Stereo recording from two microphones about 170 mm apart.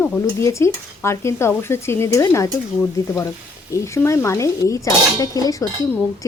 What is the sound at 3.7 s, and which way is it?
Speech, 15° left (ahead or behind).